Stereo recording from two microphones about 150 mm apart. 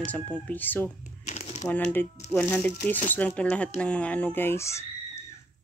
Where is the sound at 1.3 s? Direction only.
50° left (ahead or behind).